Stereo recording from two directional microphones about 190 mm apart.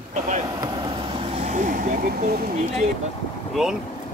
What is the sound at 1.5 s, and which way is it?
Vehicle, 45° right (ahead or behind).